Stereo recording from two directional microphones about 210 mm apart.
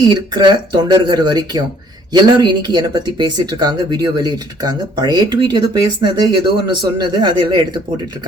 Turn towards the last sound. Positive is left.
turn(degrees=-20)  # may be behind; listen again after turning